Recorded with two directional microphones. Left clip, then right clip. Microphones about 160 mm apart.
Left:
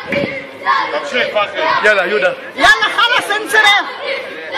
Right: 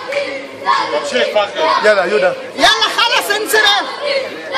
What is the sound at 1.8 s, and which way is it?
Speech, 35° left (ahead or behind).